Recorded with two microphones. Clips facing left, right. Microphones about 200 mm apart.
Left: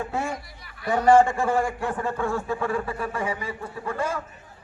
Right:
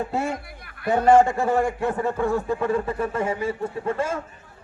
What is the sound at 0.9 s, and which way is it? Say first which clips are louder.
A man's voice: right 1 dB; 20° right (ahead or behind).